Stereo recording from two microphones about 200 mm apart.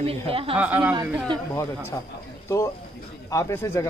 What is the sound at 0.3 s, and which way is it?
Speech, 25° right (ahead or behind).